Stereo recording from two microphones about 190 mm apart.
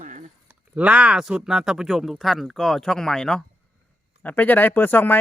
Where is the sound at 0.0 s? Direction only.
40° right (ahead or behind).